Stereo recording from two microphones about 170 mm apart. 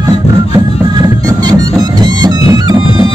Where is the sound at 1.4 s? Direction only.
25° right (ahead or behind).